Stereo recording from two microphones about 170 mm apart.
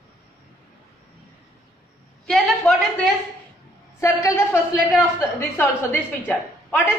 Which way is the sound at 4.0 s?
15° left (ahead or behind).